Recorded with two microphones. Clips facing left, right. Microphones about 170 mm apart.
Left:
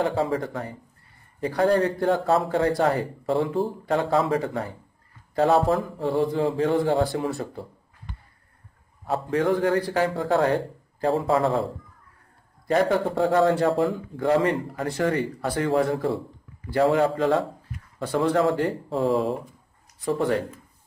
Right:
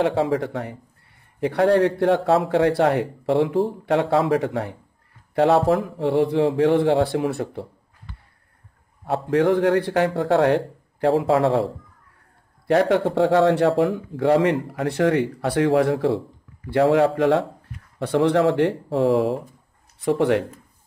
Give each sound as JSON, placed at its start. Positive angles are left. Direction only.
{"t": 0.0, "sound": "a man's voice", "side_deg": -70}
{"t": 3.4, "sound": "speech", "side_deg": 0}
{"t": 3.8, "sound": "a man's voice", "side_deg": -70}
{"t": 9.0, "sound": "a man's voice", "side_deg": -65}
{"t": 12.6, "sound": "a man's voice", "side_deg": -75}
{"t": 20.1, "sound": "a man's voice", "side_deg": -70}